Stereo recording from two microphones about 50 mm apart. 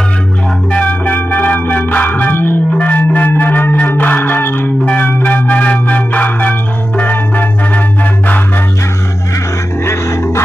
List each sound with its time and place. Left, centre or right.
0.7 s music: left
4.8 s music: left
9.8 s music: left